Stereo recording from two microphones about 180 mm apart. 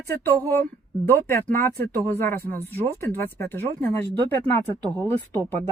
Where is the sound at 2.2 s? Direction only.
50° right (ahead or behind).